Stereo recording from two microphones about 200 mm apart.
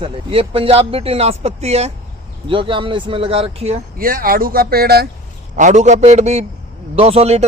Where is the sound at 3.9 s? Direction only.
45° right (ahead or behind).